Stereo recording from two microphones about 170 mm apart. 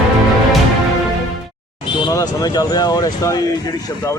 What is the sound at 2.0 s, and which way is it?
Speech, 20° left (ahead or behind).